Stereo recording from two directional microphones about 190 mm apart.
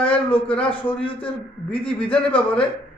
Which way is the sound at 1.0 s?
25° left (ahead or behind).